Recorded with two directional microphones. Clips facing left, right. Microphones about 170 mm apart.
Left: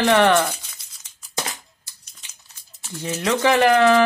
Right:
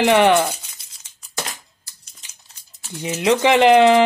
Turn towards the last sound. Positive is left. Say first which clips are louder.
# right 3 dB
turn(degrees=-20)  # may be behind; listen again after turning